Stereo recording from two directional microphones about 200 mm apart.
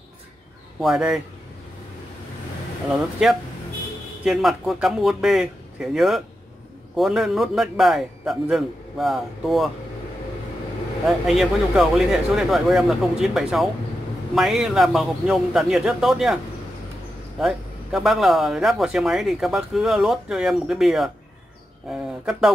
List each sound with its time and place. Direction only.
0.7 s a man's voice: centre (ahead or behind)
3.2 s a man's voice: centre (ahead or behind)
11.1 s a man's voice: centre (ahead or behind)
17.4 s a man's voice: centre (ahead or behind)